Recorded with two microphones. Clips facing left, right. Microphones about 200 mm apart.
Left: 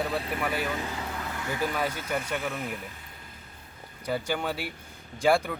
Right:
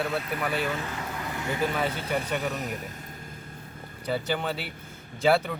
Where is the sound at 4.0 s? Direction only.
10° left (ahead or behind).